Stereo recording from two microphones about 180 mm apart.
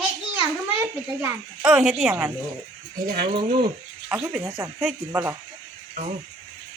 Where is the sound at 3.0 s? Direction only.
55° right (ahead or behind).